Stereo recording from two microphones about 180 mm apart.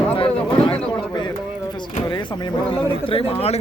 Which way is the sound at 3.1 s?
35° left (ahead or behind).